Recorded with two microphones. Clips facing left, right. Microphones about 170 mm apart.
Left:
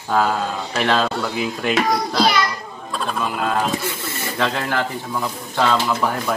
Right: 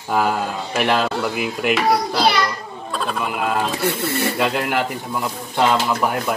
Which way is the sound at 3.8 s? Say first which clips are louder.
Right 7 dB; 65° right (ahead or behind).